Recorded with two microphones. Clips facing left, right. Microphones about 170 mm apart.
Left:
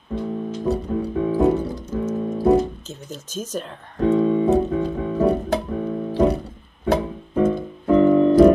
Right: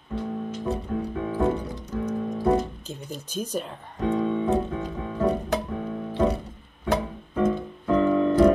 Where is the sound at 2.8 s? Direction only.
10° right (ahead or behind).